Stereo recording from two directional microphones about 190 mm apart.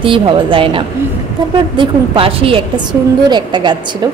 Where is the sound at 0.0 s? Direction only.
25° right (ahead or behind).